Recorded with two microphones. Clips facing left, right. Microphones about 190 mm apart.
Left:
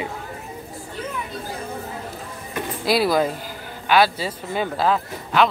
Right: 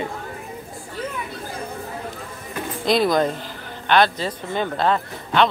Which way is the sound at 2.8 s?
5° left (ahead or behind).